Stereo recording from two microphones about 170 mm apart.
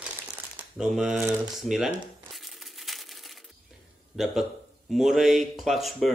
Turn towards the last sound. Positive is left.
turn(degrees=0)  # may be behind; listen again after turning